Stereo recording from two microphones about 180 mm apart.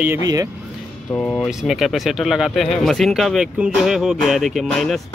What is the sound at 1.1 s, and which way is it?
Speech, 10° left (ahead or behind).